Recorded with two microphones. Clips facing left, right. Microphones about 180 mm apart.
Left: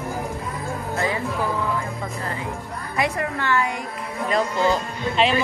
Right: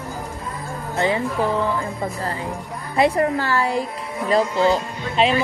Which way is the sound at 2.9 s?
30° right (ahead or behind).